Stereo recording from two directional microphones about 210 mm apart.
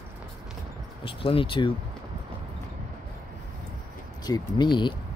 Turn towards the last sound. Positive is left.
turn(degrees=20)  # may be behind; listen again after turning